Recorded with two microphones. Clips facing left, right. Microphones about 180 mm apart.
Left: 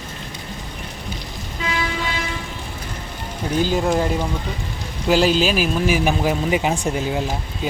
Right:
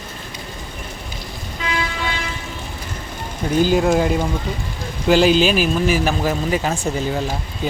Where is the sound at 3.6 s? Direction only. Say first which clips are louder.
Right 3 dB; 5° right (ahead or behind).